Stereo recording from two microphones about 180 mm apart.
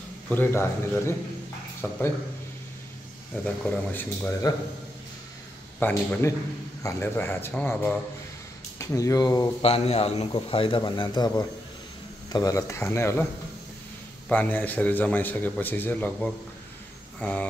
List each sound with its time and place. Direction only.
0.3 s a man's voice: 10° left (ahead or behind)
3.4 s a man's voice: 10° left (ahead or behind)
5.8 s a man's voice: 10° left (ahead or behind)
9.6 s a man's voice: 35° left (ahead or behind); by 13.3 s 15° left (ahead or behind)
14.3 s a man's voice: 10° left (ahead or behind)